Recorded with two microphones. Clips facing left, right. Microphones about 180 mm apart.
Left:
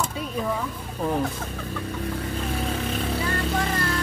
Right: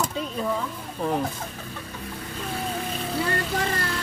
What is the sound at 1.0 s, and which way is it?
Speech, centre (ahead or behind).